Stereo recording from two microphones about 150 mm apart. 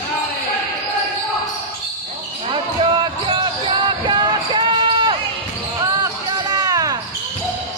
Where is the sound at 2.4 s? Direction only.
35° right (ahead or behind).